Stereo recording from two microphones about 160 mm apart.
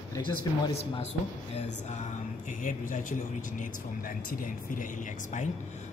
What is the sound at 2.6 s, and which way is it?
Speech, 55° left (ahead or behind).